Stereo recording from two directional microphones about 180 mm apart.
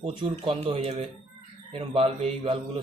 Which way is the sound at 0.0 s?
30° right (ahead or behind).